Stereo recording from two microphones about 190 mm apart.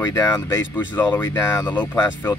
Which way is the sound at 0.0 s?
15° left (ahead or behind).